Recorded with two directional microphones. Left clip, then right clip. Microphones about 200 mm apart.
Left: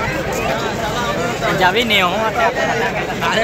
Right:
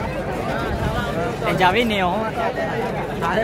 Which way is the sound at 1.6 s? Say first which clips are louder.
Left 4 dB; 30° right (ahead or behind).